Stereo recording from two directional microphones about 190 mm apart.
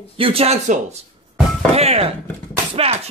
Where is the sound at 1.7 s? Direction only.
30° right (ahead or behind).